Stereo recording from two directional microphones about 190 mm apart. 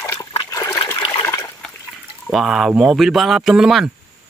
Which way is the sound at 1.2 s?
15° left (ahead or behind).